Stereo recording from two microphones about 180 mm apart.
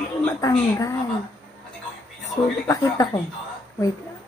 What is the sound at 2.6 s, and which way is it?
Speech, 20° left (ahead or behind).